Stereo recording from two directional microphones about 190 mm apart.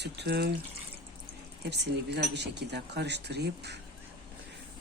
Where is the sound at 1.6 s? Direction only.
60° right (ahead or behind).